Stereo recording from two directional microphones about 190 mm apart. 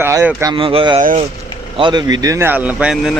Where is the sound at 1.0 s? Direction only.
40° right (ahead or behind).